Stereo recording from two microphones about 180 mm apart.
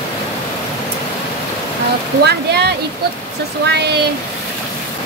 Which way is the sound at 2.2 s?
65° right (ahead or behind).